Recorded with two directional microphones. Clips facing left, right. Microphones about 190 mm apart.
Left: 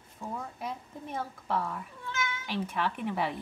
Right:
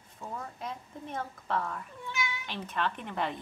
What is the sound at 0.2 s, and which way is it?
A woman's voice, 10° left (ahead or behind).